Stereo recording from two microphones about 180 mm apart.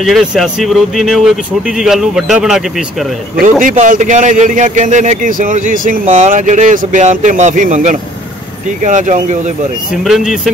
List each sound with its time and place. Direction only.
0.0 s speech: centre (ahead or behind)
3.3 s a man's voice: 45° right (ahead or behind)
10.0 s speech: 5° right (ahead or behind)